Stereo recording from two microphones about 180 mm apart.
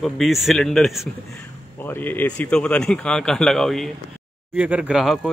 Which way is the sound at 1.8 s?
10° left (ahead or behind).